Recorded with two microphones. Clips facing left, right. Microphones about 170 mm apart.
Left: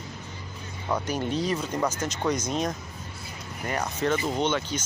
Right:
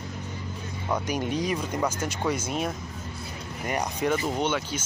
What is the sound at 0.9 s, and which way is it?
Speech, 10° right (ahead or behind).